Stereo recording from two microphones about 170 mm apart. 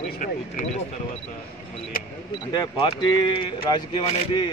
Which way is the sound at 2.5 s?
25° left (ahead or behind).